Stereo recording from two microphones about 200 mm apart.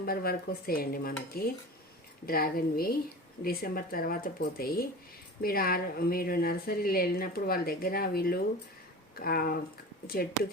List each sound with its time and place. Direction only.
0.0 s a woman's voice: 50° left (ahead or behind)